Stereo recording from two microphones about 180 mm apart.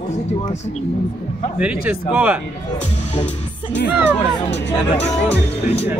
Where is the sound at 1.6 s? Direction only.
5° right (ahead or behind).